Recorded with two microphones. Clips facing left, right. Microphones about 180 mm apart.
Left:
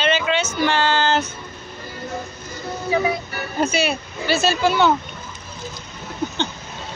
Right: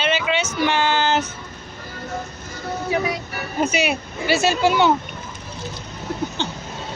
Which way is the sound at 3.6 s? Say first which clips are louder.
Even; 15° right (ahead or behind).